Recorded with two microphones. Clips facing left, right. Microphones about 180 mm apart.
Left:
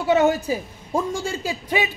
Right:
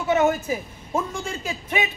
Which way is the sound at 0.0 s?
35° left (ahead or behind).